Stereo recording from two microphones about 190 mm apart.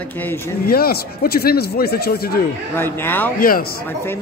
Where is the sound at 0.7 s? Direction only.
55° left (ahead or behind).